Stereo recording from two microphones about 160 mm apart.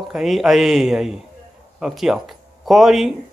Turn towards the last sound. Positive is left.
turn(degrees=0)  # may be behind; listen again after turning